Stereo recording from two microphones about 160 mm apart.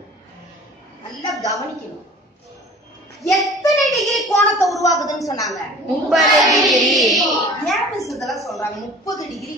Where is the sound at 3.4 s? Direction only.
20° left (ahead or behind).